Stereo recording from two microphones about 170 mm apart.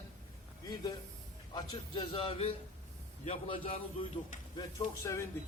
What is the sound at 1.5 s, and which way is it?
A man's voice, 25° left (ahead or behind).